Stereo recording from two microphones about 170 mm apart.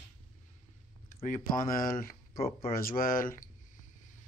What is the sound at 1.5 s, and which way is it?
Speech, 55° left (ahead or behind).